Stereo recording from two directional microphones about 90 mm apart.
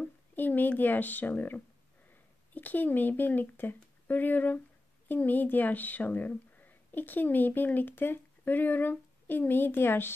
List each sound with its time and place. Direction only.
0.0 s speech: 20° left (ahead or behind)